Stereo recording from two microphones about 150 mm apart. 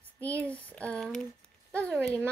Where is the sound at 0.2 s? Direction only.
10° left (ahead or behind).